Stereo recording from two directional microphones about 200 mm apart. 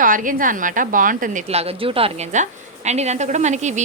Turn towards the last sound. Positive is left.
turn(degrees=-35)  # may be behind; listen again after turning